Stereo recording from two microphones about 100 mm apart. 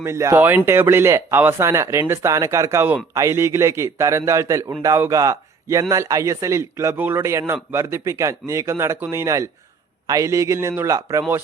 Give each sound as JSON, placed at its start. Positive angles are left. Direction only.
{"t": 0.0, "sound": "a man's voice", "side_deg": -30}
{"t": 6.9, "sound": "a man's voice", "side_deg": -20}